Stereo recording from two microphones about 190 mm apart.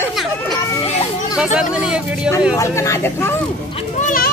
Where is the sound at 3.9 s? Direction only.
45° left (ahead or behind).